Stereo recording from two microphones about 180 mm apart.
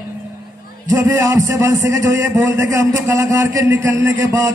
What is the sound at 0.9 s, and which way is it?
A man's voice, 15° right (ahead or behind).